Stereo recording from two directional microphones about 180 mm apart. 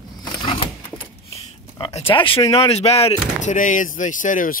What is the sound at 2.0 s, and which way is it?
Speech, 30° left (ahead or behind).